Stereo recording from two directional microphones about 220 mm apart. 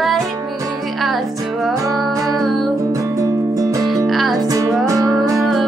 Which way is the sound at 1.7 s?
15° right (ahead or behind).